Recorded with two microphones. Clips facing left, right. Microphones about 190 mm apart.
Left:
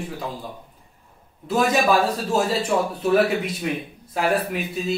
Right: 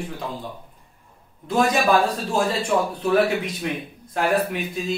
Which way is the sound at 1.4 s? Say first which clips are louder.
Even; 5° left (ahead or behind).